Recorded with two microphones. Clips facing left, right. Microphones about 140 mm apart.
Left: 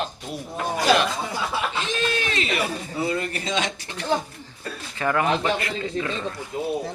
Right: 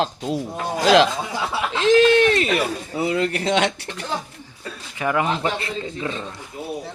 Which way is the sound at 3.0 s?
85° right.